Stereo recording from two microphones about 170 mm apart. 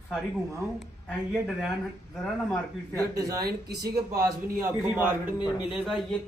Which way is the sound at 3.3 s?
65° right (ahead or behind).